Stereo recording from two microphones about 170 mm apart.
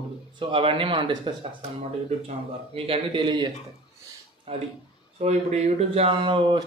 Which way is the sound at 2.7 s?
35° right (ahead or behind).